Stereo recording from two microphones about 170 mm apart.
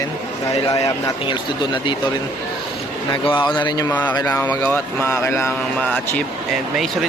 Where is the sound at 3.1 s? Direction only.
25° left (ahead or behind).